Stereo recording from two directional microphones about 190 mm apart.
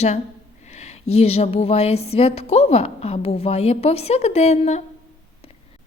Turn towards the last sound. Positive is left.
turn(degrees=35)  # may be behind; listen again after turning